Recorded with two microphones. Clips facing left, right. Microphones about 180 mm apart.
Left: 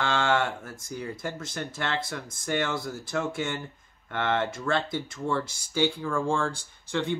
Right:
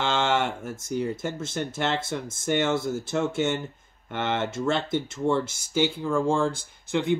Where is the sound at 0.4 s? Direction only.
20° right (ahead or behind).